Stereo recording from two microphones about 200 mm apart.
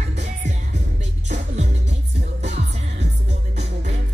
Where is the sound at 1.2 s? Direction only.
35° right (ahead or behind).